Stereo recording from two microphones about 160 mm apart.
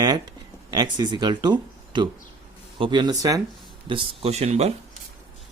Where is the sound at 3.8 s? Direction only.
35° right (ahead or behind).